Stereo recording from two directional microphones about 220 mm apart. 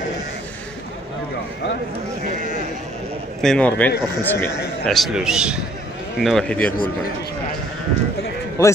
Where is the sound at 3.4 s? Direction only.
5° left (ahead or behind).